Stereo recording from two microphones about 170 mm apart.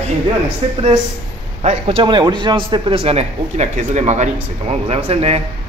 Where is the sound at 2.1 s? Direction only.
25° right (ahead or behind).